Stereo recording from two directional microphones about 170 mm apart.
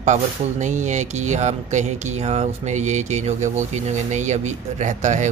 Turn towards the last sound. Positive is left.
turn(degrees=-45)  # may be behind; listen again after turning